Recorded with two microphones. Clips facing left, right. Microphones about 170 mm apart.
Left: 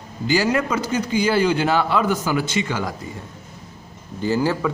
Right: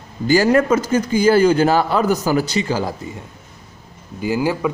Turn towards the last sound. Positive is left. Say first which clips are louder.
# right 1 dB
turn(degrees=-15)  # may be behind; listen again after turning